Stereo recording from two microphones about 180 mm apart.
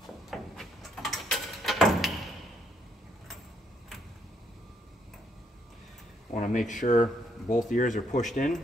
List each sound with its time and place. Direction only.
0.0 s tick-tock: centre (ahead or behind)
6.3 s a sound: 45° left (ahead or behind)
6.7 s speech: 45° left (ahead or behind)